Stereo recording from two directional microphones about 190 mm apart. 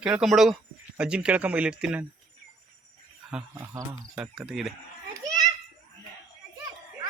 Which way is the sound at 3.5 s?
15° right (ahead or behind).